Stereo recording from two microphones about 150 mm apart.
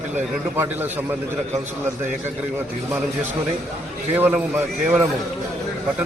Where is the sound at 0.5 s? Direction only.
15° right (ahead or behind).